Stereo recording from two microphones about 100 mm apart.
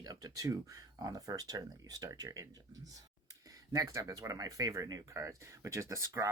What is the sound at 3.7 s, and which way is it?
Speech, 35° right (ahead or behind).